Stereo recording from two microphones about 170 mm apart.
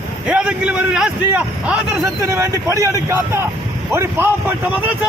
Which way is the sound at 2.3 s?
15° right (ahead or behind).